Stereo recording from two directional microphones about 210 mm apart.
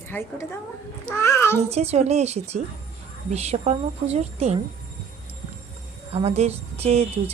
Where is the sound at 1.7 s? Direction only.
30° right (ahead or behind).